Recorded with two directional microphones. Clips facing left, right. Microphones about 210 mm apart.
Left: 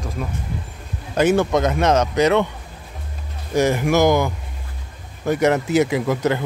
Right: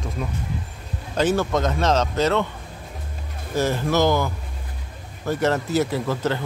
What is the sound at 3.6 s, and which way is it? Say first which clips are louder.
Speech: left 4 dB; 15° left (ahead or behind).